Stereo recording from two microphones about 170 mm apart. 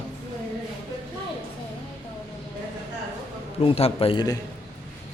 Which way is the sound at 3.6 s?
35° left (ahead or behind).